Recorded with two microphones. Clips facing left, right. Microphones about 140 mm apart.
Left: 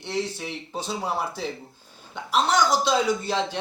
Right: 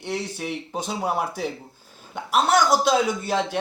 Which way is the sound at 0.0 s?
10° right (ahead or behind).